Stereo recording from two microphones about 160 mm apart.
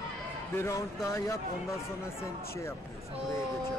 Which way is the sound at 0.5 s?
20° left (ahead or behind).